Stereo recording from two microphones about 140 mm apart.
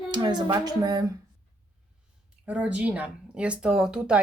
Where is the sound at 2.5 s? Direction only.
10° right (ahead or behind).